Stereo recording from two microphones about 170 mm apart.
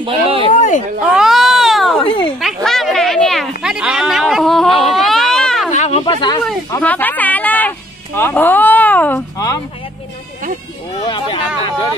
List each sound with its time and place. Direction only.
0.0 s speech: 35° right (ahead or behind)
0.6 s speech: 45° left (ahead or behind)
1.0 s cat: 5° right (ahead or behind)
2.0 s speech: 30° left (ahead or behind)
2.4 s a sound: centre (ahead or behind)
4.9 s baby cry: centre (ahead or behind)
5.7 s a sound: 40° left (ahead or behind)
6.8 s music: 10° left (ahead or behind)
11.1 s chatter: 25° left (ahead or behind)